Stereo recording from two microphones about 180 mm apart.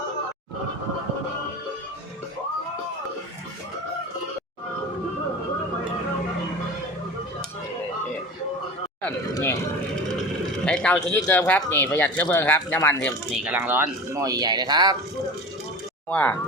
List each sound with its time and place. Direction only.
9.3 s a sound: 15° left (ahead or behind)
10.7 s speech: 5° left (ahead or behind)
13.4 s speech: 10° right (ahead or behind)
16.0 s speech: 10° left (ahead or behind)